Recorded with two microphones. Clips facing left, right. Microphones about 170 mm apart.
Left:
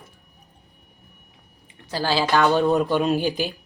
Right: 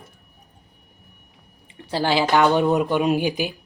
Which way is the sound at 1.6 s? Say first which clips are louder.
Right 3 dB; 25° right (ahead or behind).